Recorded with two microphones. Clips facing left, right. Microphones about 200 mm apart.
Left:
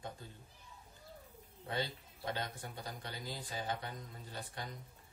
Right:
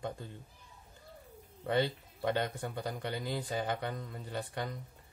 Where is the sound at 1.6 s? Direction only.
65° right (ahead or behind).